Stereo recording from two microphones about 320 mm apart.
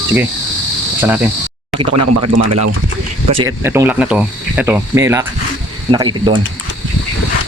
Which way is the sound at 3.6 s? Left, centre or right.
Centre.